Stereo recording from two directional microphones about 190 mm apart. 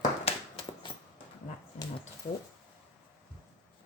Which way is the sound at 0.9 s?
15° left (ahead or behind).